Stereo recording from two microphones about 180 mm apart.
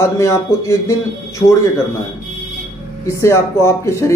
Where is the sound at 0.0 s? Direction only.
15° left (ahead or behind).